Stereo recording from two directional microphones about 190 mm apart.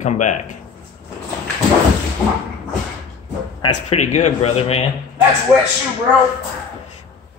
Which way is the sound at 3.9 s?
35° left (ahead or behind).